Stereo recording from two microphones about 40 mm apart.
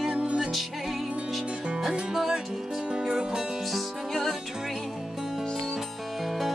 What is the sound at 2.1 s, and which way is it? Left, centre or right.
Music, centre.